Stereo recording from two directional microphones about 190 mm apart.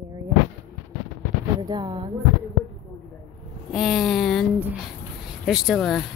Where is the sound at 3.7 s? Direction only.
Centre (ahead or behind).